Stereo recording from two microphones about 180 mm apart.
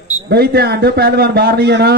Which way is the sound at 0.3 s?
60° right (ahead or behind).